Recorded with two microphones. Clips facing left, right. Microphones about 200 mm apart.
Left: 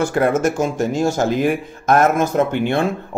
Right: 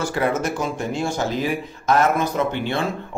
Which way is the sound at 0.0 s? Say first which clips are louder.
Left 5 dB; 50° left (ahead or behind).